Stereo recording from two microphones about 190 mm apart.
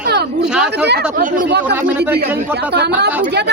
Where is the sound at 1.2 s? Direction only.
45° right (ahead or behind).